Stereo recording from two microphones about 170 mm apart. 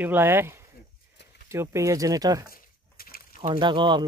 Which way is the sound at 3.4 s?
30° right (ahead or behind).